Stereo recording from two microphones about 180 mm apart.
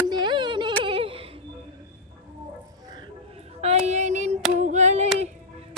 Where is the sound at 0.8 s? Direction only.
30° right (ahead or behind).